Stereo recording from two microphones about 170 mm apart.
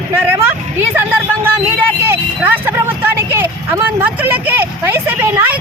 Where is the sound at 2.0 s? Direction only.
10° right (ahead or behind).